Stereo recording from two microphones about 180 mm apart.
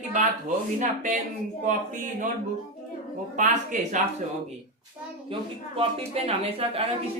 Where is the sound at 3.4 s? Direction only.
45° right (ahead or behind).